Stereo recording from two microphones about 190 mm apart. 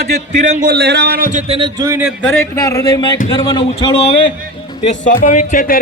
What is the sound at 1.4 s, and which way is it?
Speech, 30° right (ahead or behind).